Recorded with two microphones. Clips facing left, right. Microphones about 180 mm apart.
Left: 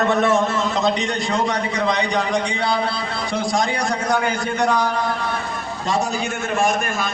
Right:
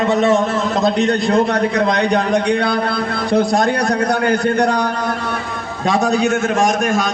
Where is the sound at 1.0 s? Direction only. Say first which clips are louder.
Right 7 dB; 60° right (ahead or behind).